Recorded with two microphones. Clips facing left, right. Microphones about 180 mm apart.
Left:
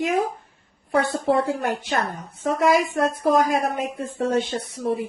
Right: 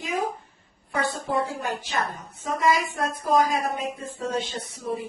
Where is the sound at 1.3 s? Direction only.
60° left (ahead or behind).